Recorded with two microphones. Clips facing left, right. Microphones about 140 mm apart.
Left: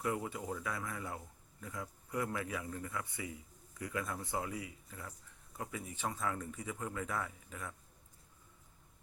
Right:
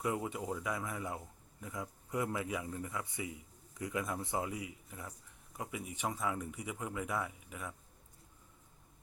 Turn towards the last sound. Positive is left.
turn(degrees=-15)  # may be behind; listen again after turning